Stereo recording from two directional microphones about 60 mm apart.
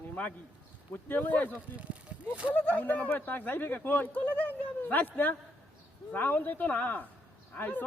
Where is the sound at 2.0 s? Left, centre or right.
Right.